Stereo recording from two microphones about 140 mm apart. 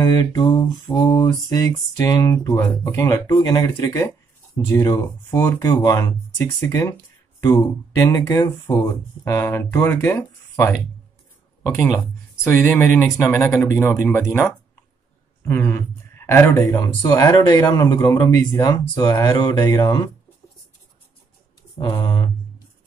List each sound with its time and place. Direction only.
0.0 s mantra: 25° left (ahead or behind)
5.8 s speech: 20° left (ahead or behind)
8.0 s mantra: 25° left (ahead or behind)
12.8 s mantra: 20° left (ahead or behind)
14.1 s speech: 15° left (ahead or behind)
17.0 s mantra: 30° left (ahead or behind)
21.7 s speech: 35° left (ahead or behind)